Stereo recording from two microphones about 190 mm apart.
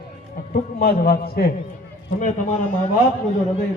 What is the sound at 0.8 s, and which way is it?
Speech, 55° left (ahead or behind).